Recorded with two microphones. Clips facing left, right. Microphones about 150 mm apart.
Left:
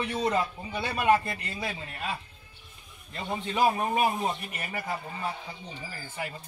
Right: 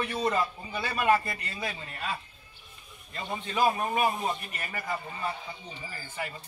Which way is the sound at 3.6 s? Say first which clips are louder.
Left 1 dB; 15° left (ahead or behind).